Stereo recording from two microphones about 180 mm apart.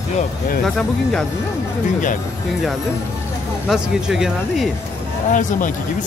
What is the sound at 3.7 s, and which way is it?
Speech, 5° right (ahead or behind).